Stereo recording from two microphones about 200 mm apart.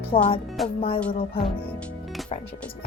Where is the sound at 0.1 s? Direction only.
30° left (ahead or behind).